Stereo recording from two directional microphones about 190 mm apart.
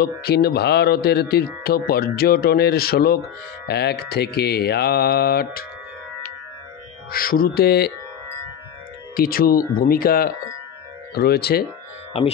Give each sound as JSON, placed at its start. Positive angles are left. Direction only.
{"t": 0.0, "sound": "speech", "side_deg": 55}
{"t": 7.1, "sound": "speech", "side_deg": 50}
{"t": 9.1, "sound": "speech", "side_deg": 50}